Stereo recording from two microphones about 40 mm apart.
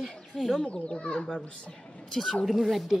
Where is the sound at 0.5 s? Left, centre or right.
Left.